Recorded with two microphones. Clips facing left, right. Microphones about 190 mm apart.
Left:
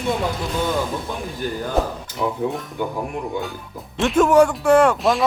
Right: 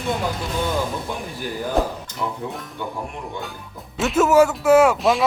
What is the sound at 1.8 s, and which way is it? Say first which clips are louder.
Speech: even; centre (ahead or behind).